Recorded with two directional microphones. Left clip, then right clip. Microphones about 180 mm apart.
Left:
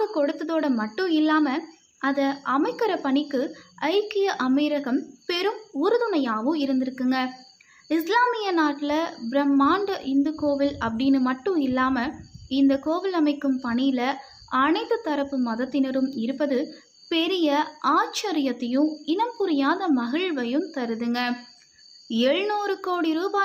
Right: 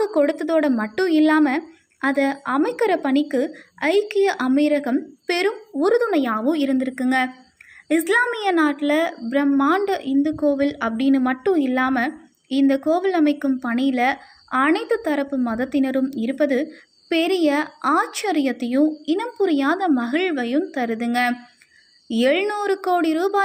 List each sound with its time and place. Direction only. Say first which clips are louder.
0.0 s a woman's voice: right 5 dB; 20° right (ahead or behind)